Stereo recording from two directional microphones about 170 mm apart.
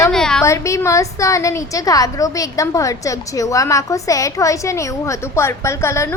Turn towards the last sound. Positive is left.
turn(degrees=15)  # may be behind; listen again after turning